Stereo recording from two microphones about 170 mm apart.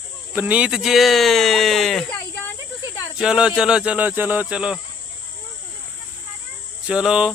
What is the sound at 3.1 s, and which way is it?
Speech, 5° right (ahead or behind).